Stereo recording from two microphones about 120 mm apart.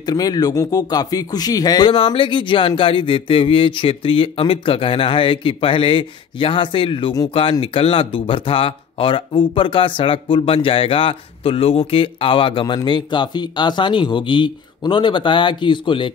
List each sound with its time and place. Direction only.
0.0 s speech: 35° left (ahead or behind)